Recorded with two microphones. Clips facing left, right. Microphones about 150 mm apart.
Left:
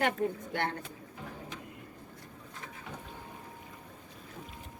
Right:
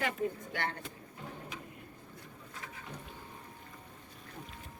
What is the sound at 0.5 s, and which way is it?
Speech, 55° left (ahead or behind).